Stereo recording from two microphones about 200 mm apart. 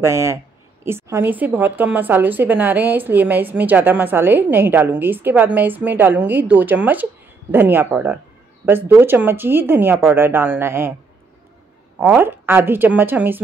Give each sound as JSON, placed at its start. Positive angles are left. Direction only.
{"t": 0.0, "sound": "a woman's voice", "side_deg": -15}
{"t": 12.0, "sound": "a woman's voice", "side_deg": -10}